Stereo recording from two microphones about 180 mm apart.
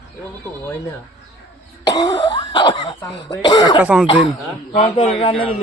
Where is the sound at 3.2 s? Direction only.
20° left (ahead or behind).